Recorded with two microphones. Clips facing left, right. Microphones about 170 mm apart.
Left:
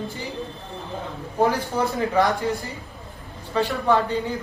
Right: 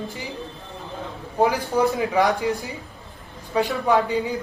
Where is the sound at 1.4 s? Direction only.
15° right (ahead or behind).